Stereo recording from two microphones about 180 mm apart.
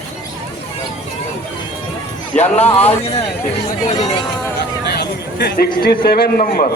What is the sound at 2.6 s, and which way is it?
Speech, 35° left (ahead or behind).